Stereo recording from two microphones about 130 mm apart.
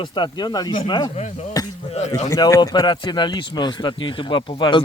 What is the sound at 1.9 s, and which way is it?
Speech, 55° left (ahead or behind).